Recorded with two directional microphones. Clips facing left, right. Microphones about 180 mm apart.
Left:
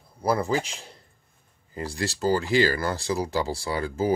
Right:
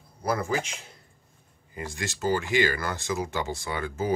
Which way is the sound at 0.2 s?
30° left (ahead or behind).